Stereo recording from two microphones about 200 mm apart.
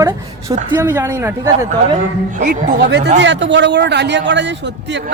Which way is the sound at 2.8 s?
60° right (ahead or behind).